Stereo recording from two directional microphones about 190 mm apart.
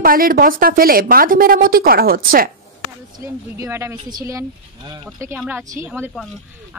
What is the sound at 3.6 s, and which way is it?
Speech, 15° right (ahead or behind).